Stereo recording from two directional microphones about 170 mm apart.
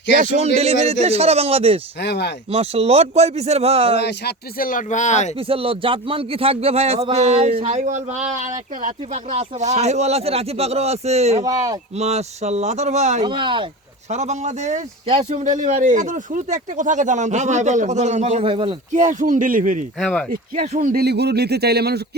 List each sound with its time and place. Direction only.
0.1 s a man's voice: 50° right (ahead or behind)
2.0 s speech: 85° left
2.5 s a man's voice: 35° right (ahead or behind)
3.9 s speech: 75° left (ahead or behind); by 5.3 s 45° left (ahead or behind)
5.5 s a man's voice: 30° right (ahead or behind)
11.4 s speech: 20° right (ahead or behind)
11.9 s a man's voice: 40° right (ahead or behind)
13.2 s speech: 30° right (ahead or behind)
14.1 s speech: 40° right (ahead or behind)
18.9 s speech: 45° right (ahead or behind)
20.0 s speech: 5° left (ahead or behind)
20.3 s speech: 50° right (ahead or behind); by 22.0 s 70° right (ahead or behind)